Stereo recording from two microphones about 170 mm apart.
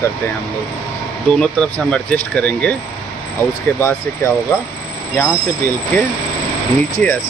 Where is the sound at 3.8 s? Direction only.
15° left (ahead or behind).